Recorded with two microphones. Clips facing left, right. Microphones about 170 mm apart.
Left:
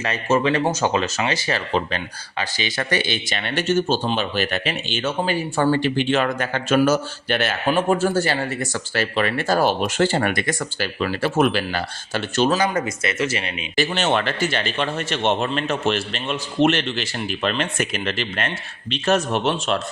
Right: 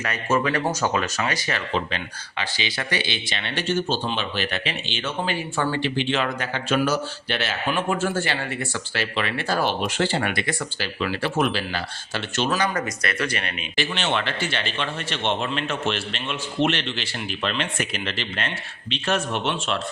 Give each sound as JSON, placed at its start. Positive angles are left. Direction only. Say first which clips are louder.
{"t": 0.0, "sound": "speech", "louder": "left 3 dB", "side_deg": 25}
{"t": 2.4, "sound": "speech", "louder": "left 3 dB", "side_deg": 45}
{"t": 12.5, "sound": "speech", "louder": "left 4 dB", "side_deg": 25}
{"t": 13.7, "sound": "speech", "louder": "left 5 dB", "side_deg": 40}